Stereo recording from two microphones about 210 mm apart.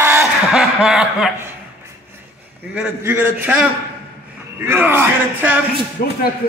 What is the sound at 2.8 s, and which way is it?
A man's voice, 10° right (ahead or behind).